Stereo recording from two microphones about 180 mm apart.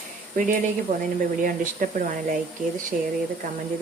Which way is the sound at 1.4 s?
45° right (ahead or behind).